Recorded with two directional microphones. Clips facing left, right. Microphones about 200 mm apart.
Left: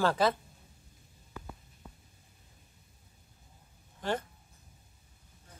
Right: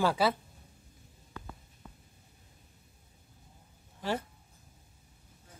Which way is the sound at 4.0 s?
5° right (ahead or behind).